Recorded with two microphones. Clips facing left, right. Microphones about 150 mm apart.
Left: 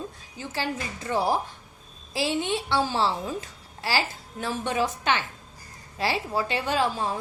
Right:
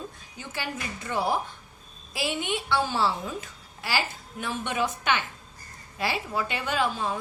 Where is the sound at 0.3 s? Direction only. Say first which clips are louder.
Left 4 dB; 30° left (ahead or behind).